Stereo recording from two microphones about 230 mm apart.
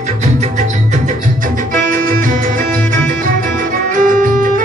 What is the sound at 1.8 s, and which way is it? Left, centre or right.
Music, right.